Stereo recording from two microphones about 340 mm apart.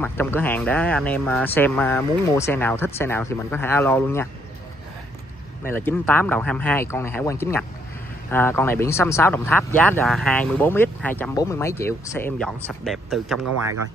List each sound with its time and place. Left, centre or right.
0.0 s speech: centre
5.6 s speech: centre